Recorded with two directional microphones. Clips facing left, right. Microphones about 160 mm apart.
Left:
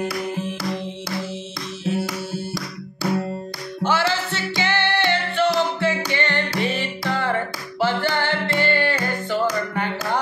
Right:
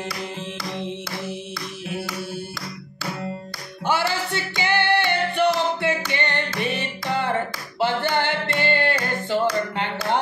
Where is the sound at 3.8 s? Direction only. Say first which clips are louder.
Left 2 dB; 15° right (ahead or behind).